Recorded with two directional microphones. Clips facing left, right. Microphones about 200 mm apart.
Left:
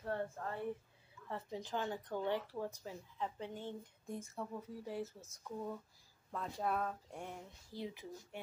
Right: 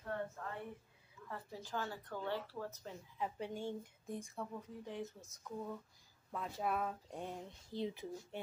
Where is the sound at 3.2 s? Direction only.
10° right (ahead or behind).